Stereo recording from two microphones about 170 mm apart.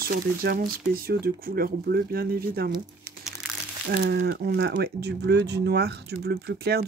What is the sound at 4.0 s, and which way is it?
Speech, 75° right (ahead or behind).